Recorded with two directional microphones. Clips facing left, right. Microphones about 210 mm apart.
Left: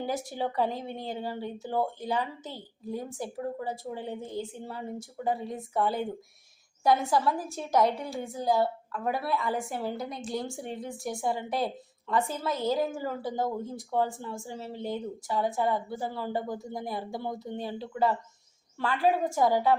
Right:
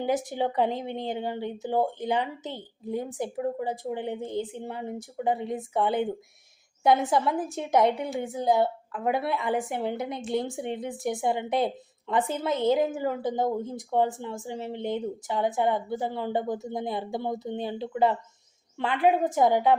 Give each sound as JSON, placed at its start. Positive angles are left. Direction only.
{"t": 0.0, "sound": "a woman's voice", "side_deg": -20}